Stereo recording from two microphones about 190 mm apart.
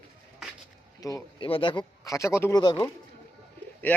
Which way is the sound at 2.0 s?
15° left (ahead or behind).